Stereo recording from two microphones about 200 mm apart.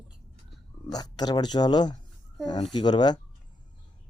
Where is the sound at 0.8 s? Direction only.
20° left (ahead or behind).